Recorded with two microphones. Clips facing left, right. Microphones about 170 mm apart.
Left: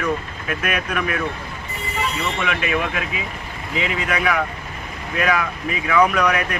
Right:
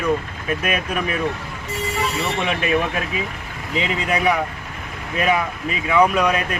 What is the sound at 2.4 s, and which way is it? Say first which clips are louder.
Speech: right 2 dB; 35° right (ahead or behind).